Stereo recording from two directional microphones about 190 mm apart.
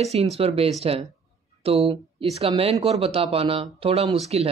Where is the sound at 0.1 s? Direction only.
35° right (ahead or behind).